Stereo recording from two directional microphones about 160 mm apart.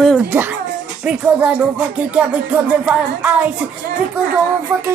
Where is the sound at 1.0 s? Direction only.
10° right (ahead or behind).